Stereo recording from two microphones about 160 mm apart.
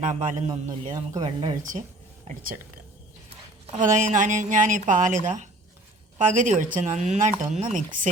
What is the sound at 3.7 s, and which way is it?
Speech, 50° right (ahead or behind).